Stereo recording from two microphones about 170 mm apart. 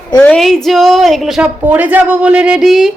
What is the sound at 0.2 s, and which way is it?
A woman's voice, 5° left (ahead or behind).